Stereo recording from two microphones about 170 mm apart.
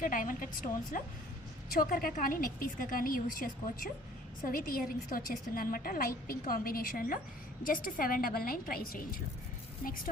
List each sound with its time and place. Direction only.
0.0 s a woman's voice: 50° left (ahead or behind)